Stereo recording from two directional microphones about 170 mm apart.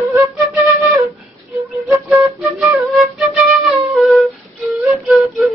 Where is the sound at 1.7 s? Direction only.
Centre (ahead or behind).